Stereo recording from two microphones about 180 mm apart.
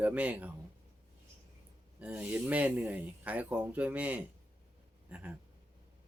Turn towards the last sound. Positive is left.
turn(degrees=-5)  # may be behind; listen again after turning